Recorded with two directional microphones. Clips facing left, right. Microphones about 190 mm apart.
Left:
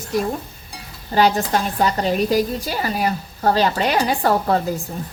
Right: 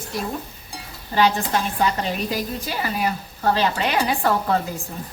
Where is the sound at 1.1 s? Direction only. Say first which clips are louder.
Left 3 dB; 40° left (ahead or behind).